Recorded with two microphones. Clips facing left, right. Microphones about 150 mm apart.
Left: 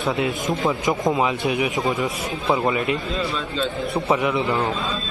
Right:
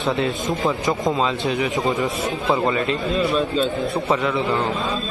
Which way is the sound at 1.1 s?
20° left (ahead or behind).